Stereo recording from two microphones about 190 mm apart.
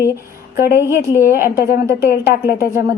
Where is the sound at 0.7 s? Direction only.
15° right (ahead or behind).